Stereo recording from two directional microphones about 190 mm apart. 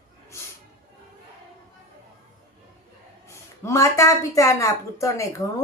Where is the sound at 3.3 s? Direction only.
15° left (ahead or behind).